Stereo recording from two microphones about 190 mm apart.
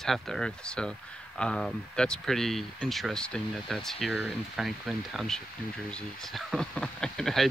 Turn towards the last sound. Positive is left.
turn(degrees=0)  # may be behind; listen again after turning